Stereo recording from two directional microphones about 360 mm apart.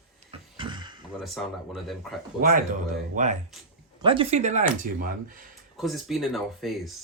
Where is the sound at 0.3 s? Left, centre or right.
Centre.